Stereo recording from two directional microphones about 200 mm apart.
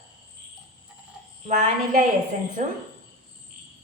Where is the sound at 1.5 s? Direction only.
40° right (ahead or behind).